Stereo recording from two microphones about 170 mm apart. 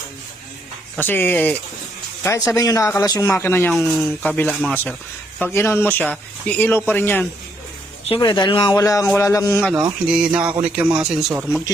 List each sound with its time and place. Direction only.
0.9 s speech: 10° left (ahead or behind)
2.5 s speech: 20° left (ahead or behind)
3.7 s a man's voice: centre (ahead or behind)
8.0 s speech: 30° left (ahead or behind)
10.1 s a man's voice: 5° right (ahead or behind)